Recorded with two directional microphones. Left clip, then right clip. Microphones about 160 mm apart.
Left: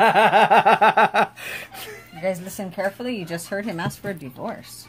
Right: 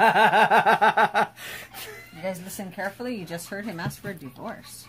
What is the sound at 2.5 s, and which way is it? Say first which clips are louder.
Speech: left 6 dB; 40° left (ahead or behind).